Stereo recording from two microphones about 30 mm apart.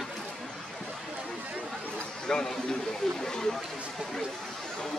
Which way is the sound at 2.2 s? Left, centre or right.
Left.